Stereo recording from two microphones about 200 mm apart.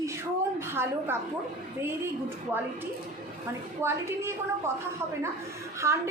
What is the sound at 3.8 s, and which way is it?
Speech, 15° right (ahead or behind).